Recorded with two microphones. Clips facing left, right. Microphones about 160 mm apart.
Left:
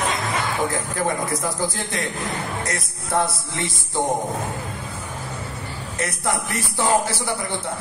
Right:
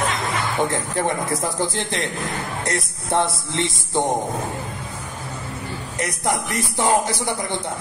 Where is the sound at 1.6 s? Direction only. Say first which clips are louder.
Right 1 dB; 25° right (ahead or behind).